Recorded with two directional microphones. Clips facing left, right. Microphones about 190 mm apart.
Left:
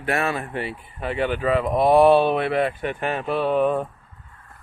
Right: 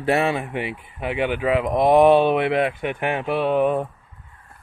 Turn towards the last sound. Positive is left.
turn(degrees=-15)  # may be behind; listen again after turning